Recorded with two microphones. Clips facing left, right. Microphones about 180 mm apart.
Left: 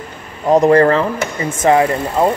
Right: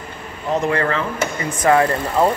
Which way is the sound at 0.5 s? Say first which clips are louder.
Left 9 dB; 40° left (ahead or behind).